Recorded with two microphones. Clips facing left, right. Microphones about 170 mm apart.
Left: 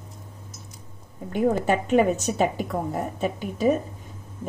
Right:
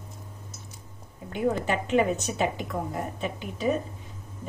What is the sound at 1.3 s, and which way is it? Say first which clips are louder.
A woman's voice: left 4 dB; 45° left (ahead or behind).